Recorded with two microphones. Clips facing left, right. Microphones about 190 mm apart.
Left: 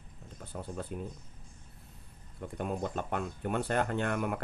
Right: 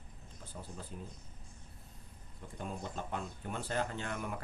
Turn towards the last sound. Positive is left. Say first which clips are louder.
# left 8 dB
turn(degrees=60)  # may be behind; listen again after turning